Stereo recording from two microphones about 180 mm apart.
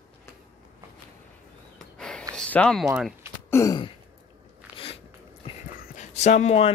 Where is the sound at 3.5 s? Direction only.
15° left (ahead or behind).